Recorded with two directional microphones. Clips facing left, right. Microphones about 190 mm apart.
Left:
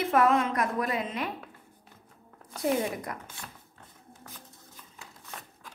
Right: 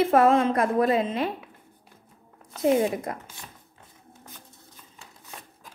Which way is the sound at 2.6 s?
20° right (ahead or behind).